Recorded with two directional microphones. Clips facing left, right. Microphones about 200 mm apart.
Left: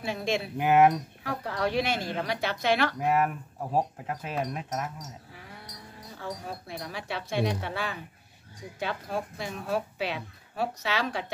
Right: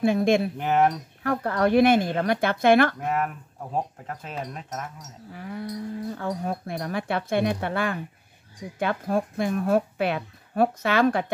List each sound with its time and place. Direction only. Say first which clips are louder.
0.0 s speech: right 9 dB; 50° right (ahead or behind)
0.6 s speech: left 1 dB; 10° left (ahead or behind)
1.2 s speech: right 8 dB; 55° right (ahead or behind)
3.0 s speech: left 1 dB; 10° left (ahead or behind)
6.1 s speech: right 8 dB; 55° right (ahead or behind)